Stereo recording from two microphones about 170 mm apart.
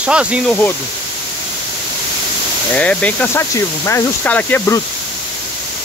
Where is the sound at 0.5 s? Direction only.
10° left (ahead or behind).